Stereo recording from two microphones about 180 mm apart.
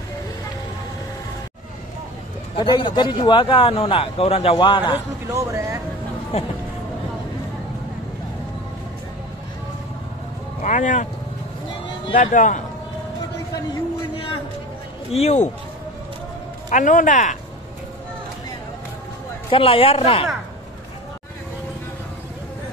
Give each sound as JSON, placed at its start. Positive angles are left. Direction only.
{"t": 2.5, "sound": "speech", "side_deg": 25}
{"t": 5.3, "sound": "speech", "side_deg": -15}
{"t": 10.6, "sound": "speech", "side_deg": 45}
{"t": 12.2, "sound": "a man's voice", "side_deg": 45}
{"t": 14.1, "sound": "a sound", "side_deg": 30}
{"t": 15.0, "sound": "a man's voice", "side_deg": 35}
{"t": 16.7, "sound": "a man's voice", "side_deg": 45}
{"t": 19.5, "sound": "speech", "side_deg": 30}